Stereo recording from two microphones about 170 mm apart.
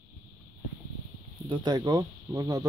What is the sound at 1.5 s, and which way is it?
Speech, 25° right (ahead or behind).